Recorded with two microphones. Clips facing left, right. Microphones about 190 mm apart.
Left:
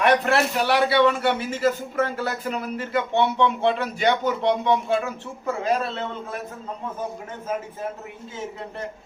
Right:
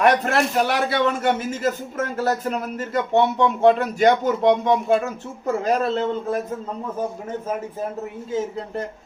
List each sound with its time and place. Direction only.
0.0 s a man's voice: 45° right (ahead or behind)